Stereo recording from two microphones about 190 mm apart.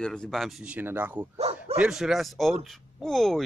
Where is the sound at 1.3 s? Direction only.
30° right (ahead or behind).